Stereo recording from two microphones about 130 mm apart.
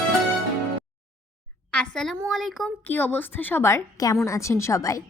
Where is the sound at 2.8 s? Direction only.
15° left (ahead or behind).